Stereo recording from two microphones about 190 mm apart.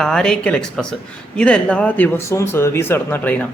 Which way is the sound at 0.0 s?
5° left (ahead or behind).